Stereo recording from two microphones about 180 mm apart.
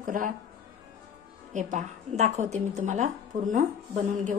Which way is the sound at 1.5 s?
40° right (ahead or behind).